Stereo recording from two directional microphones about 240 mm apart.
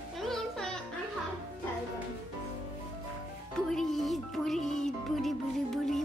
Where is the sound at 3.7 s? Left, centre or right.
Centre.